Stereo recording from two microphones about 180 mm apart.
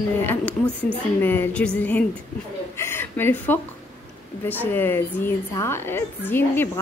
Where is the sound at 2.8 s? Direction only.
10° left (ahead or behind).